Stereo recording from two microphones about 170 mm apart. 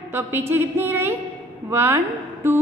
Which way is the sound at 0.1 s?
15° right (ahead or behind).